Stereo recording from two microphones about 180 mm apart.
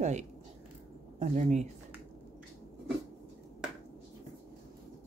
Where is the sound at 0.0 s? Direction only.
40° right (ahead or behind).